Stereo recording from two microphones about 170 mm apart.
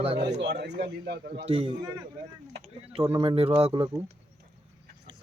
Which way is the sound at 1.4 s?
35° right (ahead or behind).